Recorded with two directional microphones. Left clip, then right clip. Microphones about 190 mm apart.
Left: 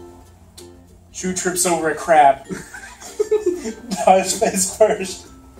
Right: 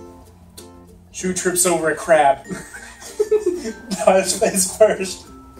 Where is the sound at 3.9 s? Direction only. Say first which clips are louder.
Left 1 dB; 20° right (ahead or behind).